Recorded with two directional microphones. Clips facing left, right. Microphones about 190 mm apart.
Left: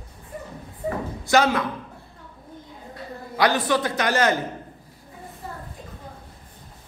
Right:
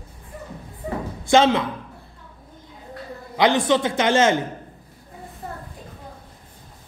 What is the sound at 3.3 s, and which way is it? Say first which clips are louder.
A man's voice: right 3 dB; 20° right (ahead or behind).